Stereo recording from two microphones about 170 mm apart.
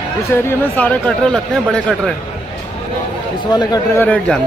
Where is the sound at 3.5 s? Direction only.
20° left (ahead or behind).